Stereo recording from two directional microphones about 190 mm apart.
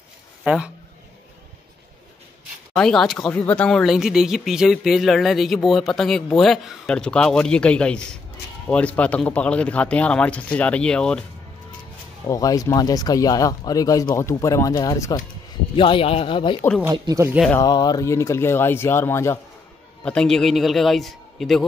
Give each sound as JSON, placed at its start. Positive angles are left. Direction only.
{"t": 0.4, "sound": "a sound", "side_deg": -5}
{"t": 2.7, "sound": "speech", "side_deg": 5}
{"t": 12.3, "sound": "speech", "side_deg": 20}
{"t": 16.8, "sound": "speech", "side_deg": -20}
{"t": 17.6, "sound": "speech", "side_deg": 20}
{"t": 20.1, "sound": "speech", "side_deg": 5}